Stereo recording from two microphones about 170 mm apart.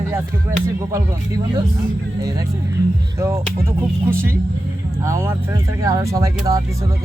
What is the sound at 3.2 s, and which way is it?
Speech, 15° right (ahead or behind).